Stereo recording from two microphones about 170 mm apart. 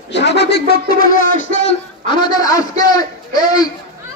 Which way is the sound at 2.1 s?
20° left (ahead or behind).